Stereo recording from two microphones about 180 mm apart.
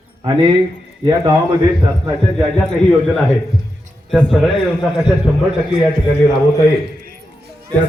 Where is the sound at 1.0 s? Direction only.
25° right (ahead or behind).